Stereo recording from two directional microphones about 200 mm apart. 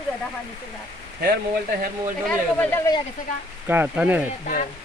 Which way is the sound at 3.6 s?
10° right (ahead or behind).